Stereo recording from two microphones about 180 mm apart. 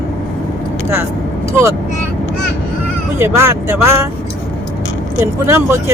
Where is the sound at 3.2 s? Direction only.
15° right (ahead or behind).